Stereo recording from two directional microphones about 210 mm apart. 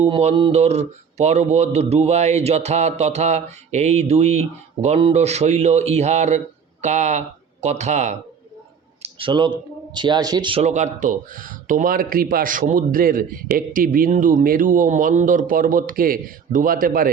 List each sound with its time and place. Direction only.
0.0 s speech: 30° right (ahead or behind)